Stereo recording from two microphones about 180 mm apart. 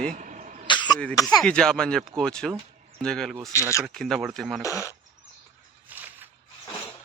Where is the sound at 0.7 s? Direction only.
25° left (ahead or behind).